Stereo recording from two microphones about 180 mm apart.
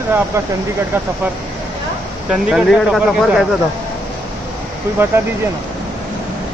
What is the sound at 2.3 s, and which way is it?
Speech, centre (ahead or behind).